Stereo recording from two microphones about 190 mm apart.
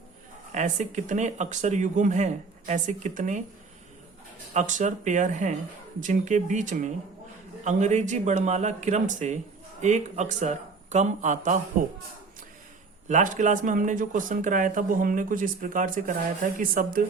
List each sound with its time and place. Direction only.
0.5 s speech: 40° right (ahead or behind)
4.5 s speech: 40° right (ahead or behind)
13.1 s speech: 40° right (ahead or behind)